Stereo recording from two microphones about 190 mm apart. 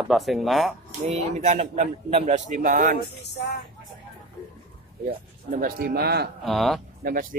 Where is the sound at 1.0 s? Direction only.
35° right (ahead or behind).